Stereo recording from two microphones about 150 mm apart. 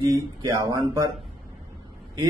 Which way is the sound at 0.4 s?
25° right (ahead or behind).